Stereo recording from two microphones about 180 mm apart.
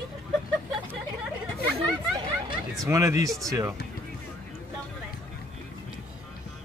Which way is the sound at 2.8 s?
15° right (ahead or behind).